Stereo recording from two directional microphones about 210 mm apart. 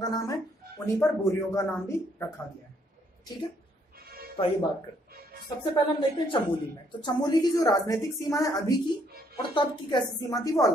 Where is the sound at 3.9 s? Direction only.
45° right (ahead or behind).